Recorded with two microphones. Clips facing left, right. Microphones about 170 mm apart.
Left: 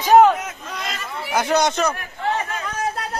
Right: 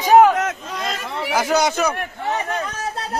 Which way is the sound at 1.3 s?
5° right (ahead or behind).